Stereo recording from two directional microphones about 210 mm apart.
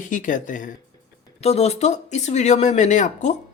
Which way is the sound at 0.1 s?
40° left (ahead or behind).